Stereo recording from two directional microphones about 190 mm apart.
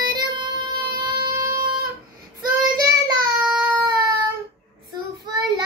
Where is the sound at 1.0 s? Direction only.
20° right (ahead or behind).